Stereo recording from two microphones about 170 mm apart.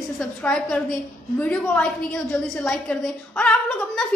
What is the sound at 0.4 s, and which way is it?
A woman's voice, 10° left (ahead or behind).